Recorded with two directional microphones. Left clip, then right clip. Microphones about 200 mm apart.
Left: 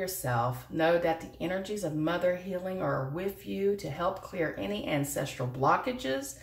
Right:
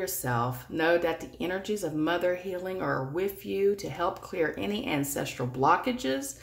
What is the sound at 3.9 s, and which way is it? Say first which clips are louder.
Speech: right 2 dB; 45° right (ahead or behind).